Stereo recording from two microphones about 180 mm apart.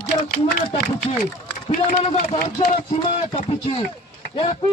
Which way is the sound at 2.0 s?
35° left (ahead or behind).